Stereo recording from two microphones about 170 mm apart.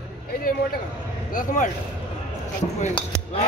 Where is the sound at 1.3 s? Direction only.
50° left (ahead or behind).